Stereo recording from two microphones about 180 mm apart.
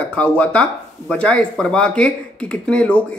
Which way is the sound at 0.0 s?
5° left (ahead or behind).